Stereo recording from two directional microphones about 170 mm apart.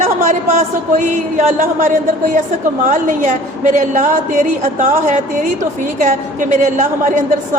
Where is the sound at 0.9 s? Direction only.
45° right (ahead or behind).